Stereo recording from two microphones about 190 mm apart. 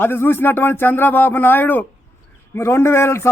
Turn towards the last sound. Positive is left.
turn(degrees=15)  # may be behind; listen again after turning